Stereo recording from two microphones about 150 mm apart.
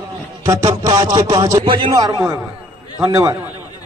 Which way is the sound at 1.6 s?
35° right (ahead or behind).